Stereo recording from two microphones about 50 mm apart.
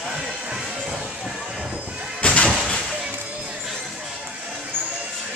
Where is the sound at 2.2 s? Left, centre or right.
Left.